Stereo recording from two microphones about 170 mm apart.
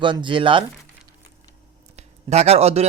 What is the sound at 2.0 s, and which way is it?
Speech, 40° right (ahead or behind).